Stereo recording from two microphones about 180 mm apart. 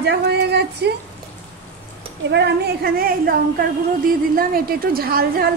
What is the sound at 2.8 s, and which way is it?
A woman's voice, 55° right (ahead or behind).